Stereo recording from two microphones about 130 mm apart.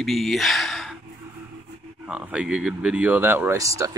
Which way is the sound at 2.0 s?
5° right (ahead or behind).